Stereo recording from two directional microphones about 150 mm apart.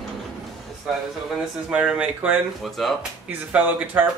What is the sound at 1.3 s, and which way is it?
Speech, 5° right (ahead or behind).